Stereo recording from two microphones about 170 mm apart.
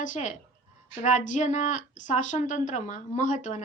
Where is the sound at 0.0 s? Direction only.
45° left (ahead or behind).